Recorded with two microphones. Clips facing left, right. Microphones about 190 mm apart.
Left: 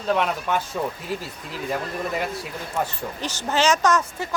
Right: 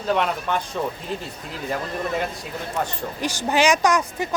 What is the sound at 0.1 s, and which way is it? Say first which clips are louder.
Speech: even; centre (ahead or behind).